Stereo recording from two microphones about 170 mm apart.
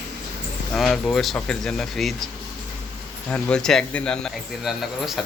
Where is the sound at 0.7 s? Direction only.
5° left (ahead or behind).